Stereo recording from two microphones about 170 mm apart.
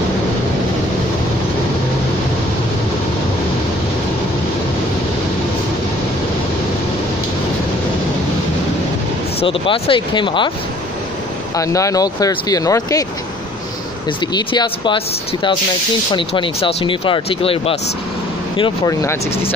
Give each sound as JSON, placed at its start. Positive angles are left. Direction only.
{"t": 9.4, "sound": "speech", "side_deg": 30}
{"t": 11.5, "sound": "speech", "side_deg": 20}
{"t": 14.3, "sound": "speech", "side_deg": 25}
{"t": 16.1, "sound": "speech", "side_deg": 30}
{"t": 18.6, "sound": "speech", "side_deg": 20}